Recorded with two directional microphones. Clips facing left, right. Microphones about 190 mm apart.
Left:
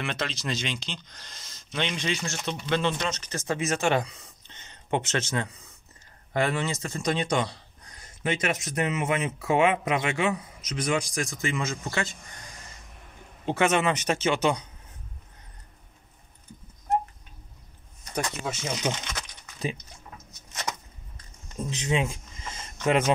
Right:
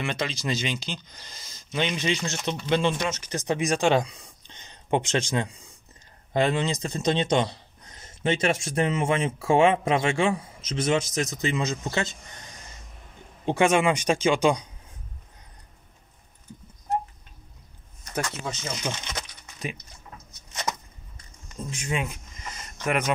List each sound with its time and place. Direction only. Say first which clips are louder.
0.0 s speech: right 2 dB; centre (ahead or behind)
2.0 s speech: right 3 dB; 20° right (ahead or behind)
13.5 s speech: right 3 dB; 15° right (ahead or behind)
18.4 s speech: left 2 dB; 10° left (ahead or behind)
21.6 s a sound: left 3 dB; 25° left (ahead or behind)